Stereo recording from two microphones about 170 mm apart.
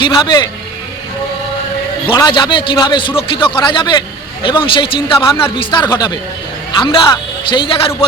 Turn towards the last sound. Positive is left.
turn(degrees=30)  # may be behind; listen again after turning